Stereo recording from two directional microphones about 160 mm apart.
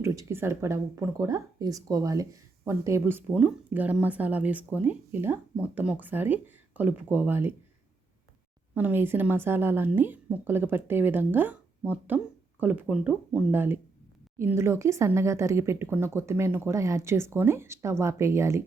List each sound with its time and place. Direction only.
0.0 s a woman's voice: 15° right (ahead or behind)
8.7 s a woman's voice: 10° right (ahead or behind)